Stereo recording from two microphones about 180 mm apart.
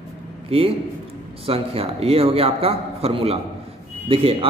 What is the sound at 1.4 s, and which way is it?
A man's voice, 35° right (ahead or behind).